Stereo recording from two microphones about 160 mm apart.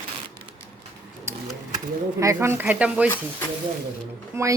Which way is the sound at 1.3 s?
15° right (ahead or behind).